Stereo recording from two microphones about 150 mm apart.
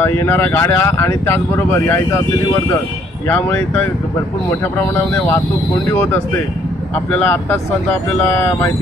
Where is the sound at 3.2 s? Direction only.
15° left (ahead or behind).